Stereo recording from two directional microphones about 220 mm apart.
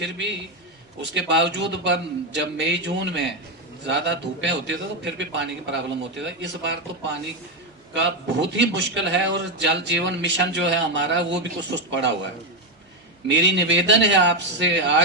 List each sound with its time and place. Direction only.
0.0 s a man's voice: 55° right (ahead or behind)
7.9 s a man's voice: 55° right (ahead or behind)
13.3 s a man's voice: 55° right (ahead or behind)